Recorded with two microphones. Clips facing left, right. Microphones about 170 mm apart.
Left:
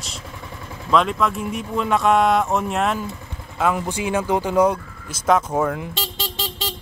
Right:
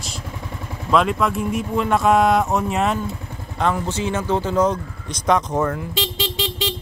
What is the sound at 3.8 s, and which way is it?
Speech, 10° left (ahead or behind).